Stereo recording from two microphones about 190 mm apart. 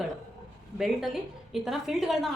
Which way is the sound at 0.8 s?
Centre (ahead or behind).